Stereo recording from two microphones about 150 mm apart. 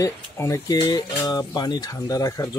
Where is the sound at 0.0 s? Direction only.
20° left (ahead or behind).